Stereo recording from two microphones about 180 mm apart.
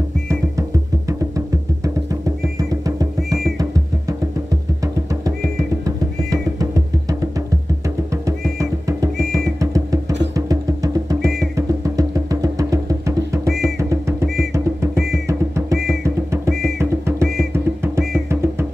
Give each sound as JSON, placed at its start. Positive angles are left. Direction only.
{"t": 0.3, "sound": "music", "side_deg": -15}
{"t": 2.2, "sound": "drum", "side_deg": -20}
{"t": 5.9, "sound": "music", "side_deg": -20}
{"t": 8.3, "sound": "music", "side_deg": -20}
{"t": 13.7, "sound": "drum", "side_deg": -15}
{"t": 17.9, "sound": "music", "side_deg": -15}